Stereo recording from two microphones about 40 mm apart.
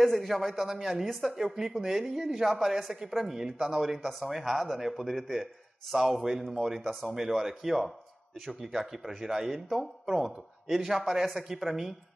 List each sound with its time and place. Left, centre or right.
0.0 s a man's voice: centre
1.0 s a man's voice: centre
1.3 s speech: centre
4.5 s a man's voice: centre